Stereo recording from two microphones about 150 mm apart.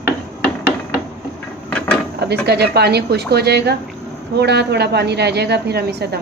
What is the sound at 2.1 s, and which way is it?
A woman's voice, 90° right.